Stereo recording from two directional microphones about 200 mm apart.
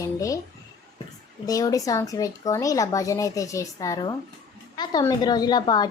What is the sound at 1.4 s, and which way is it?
A woman's voice, 15° left (ahead or behind).